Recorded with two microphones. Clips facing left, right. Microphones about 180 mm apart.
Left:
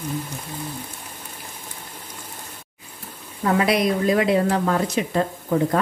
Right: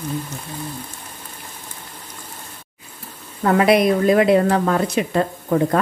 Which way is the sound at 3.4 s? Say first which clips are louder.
Right 5 dB; 55° right (ahead or behind).